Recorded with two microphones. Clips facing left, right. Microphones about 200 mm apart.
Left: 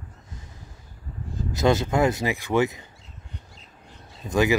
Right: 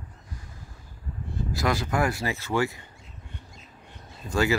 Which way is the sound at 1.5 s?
25° left (ahead or behind).